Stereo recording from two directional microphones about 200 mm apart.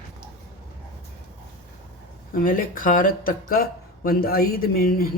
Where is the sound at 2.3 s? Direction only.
45° left (ahead or behind).